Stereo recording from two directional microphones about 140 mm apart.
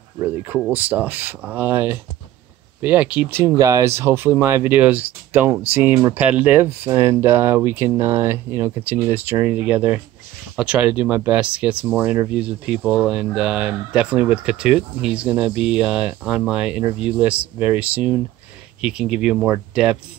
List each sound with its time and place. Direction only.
0.2 s speech: 20° right (ahead or behind)